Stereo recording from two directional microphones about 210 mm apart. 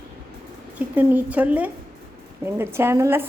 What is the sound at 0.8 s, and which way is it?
A woman's voice, 5° right (ahead or behind).